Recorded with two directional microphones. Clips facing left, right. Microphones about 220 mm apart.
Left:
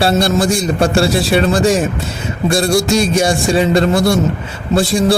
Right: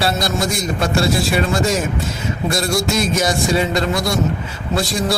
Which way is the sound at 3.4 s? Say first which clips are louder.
Left 5 dB; 30° left (ahead or behind).